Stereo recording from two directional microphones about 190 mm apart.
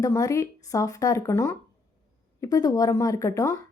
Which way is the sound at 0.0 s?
15° left (ahead or behind).